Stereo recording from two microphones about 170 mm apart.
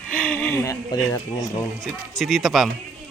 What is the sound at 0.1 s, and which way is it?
Speech, 5° left (ahead or behind).